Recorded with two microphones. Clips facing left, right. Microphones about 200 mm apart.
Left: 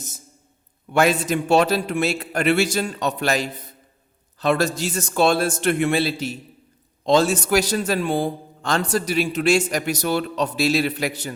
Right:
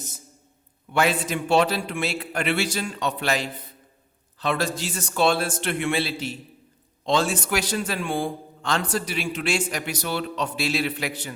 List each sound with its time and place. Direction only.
0.9 s a man's voice: 45° left (ahead or behind)